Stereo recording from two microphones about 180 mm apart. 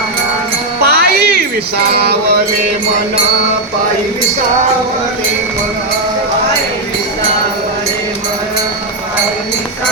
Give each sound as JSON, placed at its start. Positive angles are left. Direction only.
{"t": 0.9, "sound": "music", "side_deg": -60}